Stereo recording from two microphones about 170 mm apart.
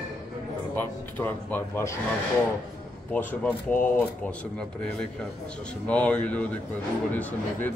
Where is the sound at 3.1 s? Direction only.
10° left (ahead or behind).